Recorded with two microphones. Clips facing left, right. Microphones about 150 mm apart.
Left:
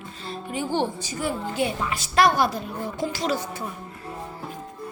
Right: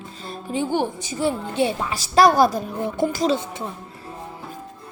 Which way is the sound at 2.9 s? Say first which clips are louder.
Right 7 dB; 55° right (ahead or behind).